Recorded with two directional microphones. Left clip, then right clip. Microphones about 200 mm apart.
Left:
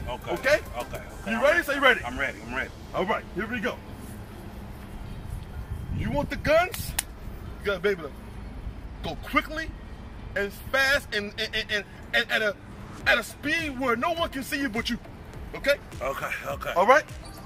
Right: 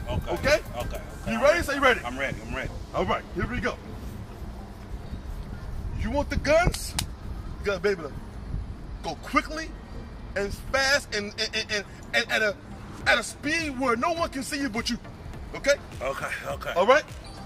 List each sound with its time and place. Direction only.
0.3 s speech: centre (ahead or behind)
2.0 s speech: 15° right (ahead or behind)
2.9 s speech: 5° left (ahead or behind)
6.0 s speech: 5° left (ahead or behind)
16.7 s speech: 20° right (ahead or behind)